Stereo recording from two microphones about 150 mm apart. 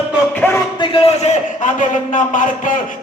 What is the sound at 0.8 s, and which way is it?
A man's voice, 40° left (ahead or behind).